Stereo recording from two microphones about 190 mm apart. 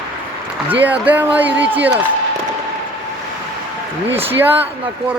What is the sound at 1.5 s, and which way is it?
Speech, 65° right (ahead or behind).